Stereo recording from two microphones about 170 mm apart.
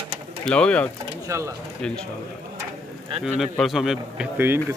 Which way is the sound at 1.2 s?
20° right (ahead or behind).